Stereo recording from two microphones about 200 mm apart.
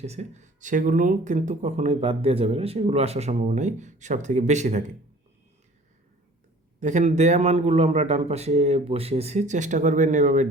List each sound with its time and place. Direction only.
0.0 s speech: 35° right (ahead or behind)
6.7 s speech: 35° right (ahead or behind)